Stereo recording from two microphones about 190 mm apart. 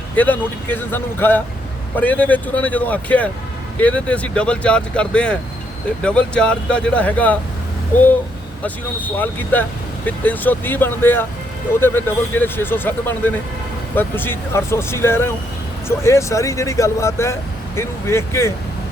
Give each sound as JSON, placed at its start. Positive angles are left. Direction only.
{"t": 0.2, "sound": "speech", "side_deg": 10}
{"t": 8.6, "sound": "speech", "side_deg": 10}